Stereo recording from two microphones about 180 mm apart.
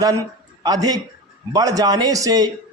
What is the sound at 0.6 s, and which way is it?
A man's voice, 20° right (ahead or behind).